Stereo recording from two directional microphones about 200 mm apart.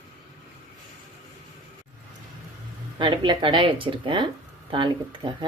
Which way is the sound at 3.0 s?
25° right (ahead or behind).